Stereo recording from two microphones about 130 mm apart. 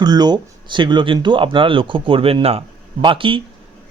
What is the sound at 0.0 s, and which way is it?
Speech, 35° right (ahead or behind).